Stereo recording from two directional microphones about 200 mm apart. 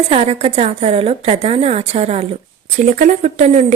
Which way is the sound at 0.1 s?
30° right (ahead or behind).